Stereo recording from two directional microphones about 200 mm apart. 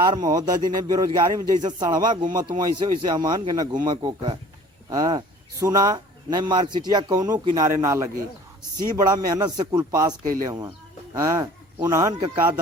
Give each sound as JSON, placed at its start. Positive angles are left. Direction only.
{"t": 0.0, "sound": "speech", "side_deg": -20}